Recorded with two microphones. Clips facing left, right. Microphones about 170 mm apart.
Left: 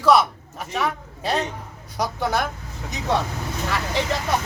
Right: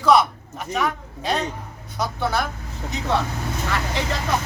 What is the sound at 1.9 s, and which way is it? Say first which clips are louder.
Speech: left 1 dB; 15° left (ahead or behind).